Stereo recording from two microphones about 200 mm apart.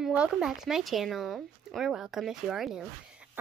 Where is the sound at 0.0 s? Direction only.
5° right (ahead or behind).